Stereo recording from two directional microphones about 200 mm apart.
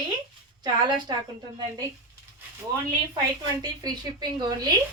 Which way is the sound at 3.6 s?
20° right (ahead or behind).